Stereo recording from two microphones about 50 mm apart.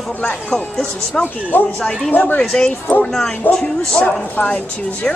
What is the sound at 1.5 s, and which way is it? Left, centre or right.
Speech, left.